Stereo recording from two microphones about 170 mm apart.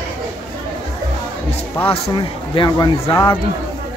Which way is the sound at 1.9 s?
30° left (ahead or behind).